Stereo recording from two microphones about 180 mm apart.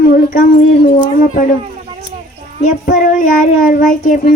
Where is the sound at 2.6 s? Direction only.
45° left (ahead or behind).